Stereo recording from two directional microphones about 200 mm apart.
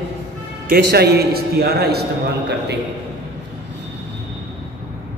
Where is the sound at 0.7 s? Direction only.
55° right (ahead or behind).